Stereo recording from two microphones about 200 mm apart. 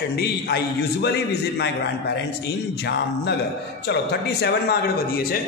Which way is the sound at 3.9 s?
55° left (ahead or behind).